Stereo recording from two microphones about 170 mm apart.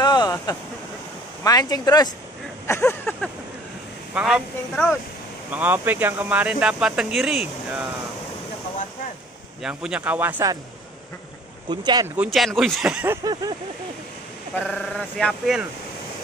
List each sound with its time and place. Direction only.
0.0 s a sound: 25° left (ahead or behind)
1.4 s speech: 20° left (ahead or behind)
4.1 s speech: 5° right (ahead or behind)
9.6 s speech: 5° right (ahead or behind)
11.7 s speech: 25° right (ahead or behind)
12.2 s speech: centre (ahead or behind)
13.3 s speech: 25° right (ahead or behind)
14.7 s speech: 5° left (ahead or behind)